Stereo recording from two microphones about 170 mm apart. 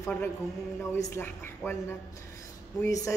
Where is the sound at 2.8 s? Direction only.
20° left (ahead or behind).